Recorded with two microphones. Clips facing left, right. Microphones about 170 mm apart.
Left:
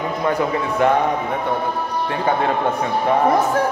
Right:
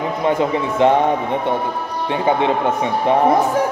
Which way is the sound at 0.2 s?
20° right (ahead or behind).